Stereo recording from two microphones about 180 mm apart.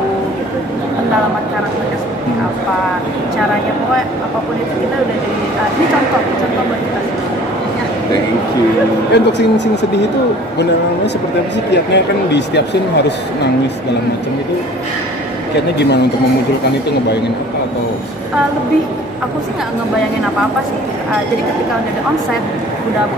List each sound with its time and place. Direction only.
9.1 s speech: 70° left (ahead or behind)
11.7 s speech: 70° left (ahead or behind)